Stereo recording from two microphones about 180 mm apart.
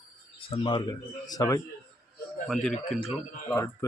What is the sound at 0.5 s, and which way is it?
Speech, 25° left (ahead or behind).